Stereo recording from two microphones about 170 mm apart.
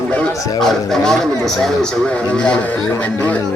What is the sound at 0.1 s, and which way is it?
Speech, 5° left (ahead or behind).